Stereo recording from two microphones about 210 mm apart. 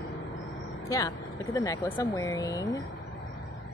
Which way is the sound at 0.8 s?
15° left (ahead or behind).